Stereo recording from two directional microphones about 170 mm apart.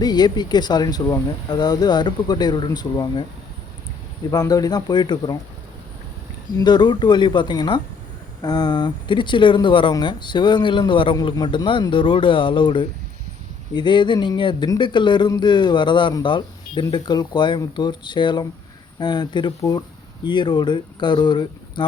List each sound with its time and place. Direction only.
0.0 s speech: 25° left (ahead or behind)
4.3 s speech: 20° left (ahead or behind)
6.6 s speech: 25° left (ahead or behind)